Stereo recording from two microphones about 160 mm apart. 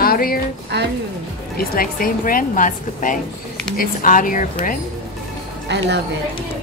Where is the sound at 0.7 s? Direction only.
90° right.